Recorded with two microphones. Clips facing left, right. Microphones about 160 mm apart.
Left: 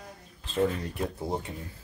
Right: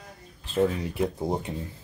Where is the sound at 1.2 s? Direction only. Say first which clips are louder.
Right 4 dB; 20° right (ahead or behind).